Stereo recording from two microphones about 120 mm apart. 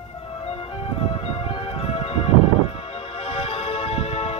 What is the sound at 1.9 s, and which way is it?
Music, 55° left (ahead or behind).